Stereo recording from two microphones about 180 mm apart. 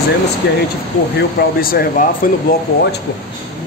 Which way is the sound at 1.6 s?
55° left (ahead or behind).